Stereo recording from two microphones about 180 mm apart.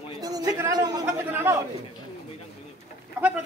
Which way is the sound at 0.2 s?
20° right (ahead or behind).